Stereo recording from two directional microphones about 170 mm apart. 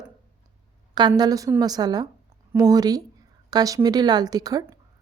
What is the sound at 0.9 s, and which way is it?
Speech, 25° right (ahead or behind).